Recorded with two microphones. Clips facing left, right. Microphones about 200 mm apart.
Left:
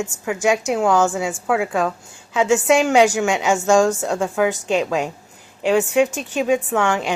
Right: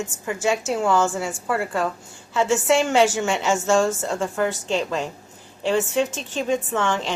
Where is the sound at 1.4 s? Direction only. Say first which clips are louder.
Left 4 dB; 90° left.